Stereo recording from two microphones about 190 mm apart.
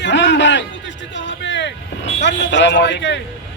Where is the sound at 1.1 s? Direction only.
70° left (ahead or behind).